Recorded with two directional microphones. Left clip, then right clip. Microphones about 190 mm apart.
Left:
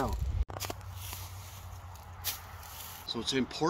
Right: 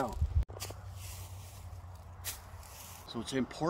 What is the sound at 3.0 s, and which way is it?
Speech, 25° right (ahead or behind).